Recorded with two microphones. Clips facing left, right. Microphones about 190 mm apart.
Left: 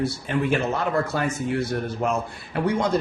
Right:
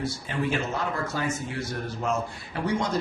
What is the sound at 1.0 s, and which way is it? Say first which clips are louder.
Speech: left 4 dB; 60° left (ahead or behind).